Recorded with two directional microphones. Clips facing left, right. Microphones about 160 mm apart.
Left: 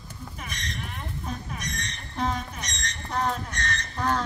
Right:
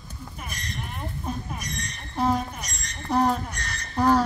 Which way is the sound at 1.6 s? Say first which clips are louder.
Even; 10° right (ahead or behind).